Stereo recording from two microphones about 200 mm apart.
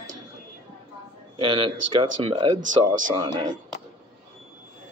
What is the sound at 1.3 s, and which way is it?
Speech, 25° right (ahead or behind).